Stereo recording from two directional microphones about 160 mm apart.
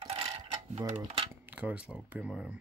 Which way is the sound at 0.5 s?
40° right (ahead or behind).